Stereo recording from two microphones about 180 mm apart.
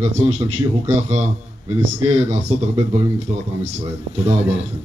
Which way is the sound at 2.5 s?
35° right (ahead or behind).